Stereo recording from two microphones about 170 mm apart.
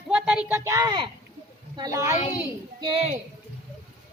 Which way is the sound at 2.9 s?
40° right (ahead or behind).